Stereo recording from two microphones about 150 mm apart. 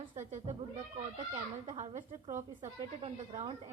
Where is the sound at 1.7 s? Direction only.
50° right (ahead or behind).